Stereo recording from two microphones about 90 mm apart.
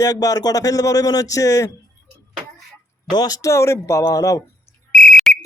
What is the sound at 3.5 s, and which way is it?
Speech, 30° left (ahead or behind).